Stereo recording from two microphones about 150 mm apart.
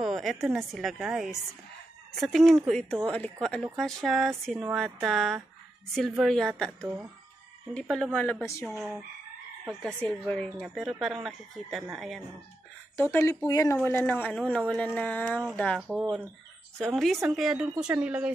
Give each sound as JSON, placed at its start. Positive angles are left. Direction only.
{"t": 0.0, "sound": "speech", "side_deg": 0}
{"t": 7.9, "sound": "a woman's voice", "side_deg": 5}
{"t": 8.6, "sound": "speech", "side_deg": 0}
{"t": 13.1, "sound": "a woman's voice", "side_deg": 20}
{"t": 15.9, "sound": "speech", "side_deg": -5}